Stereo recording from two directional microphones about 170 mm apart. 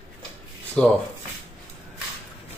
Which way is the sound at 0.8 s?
5° left (ahead or behind).